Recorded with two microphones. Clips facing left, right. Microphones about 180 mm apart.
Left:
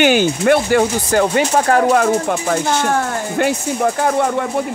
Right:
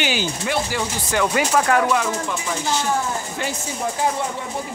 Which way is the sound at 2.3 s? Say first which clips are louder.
Left 7 dB; 60° left (ahead or behind).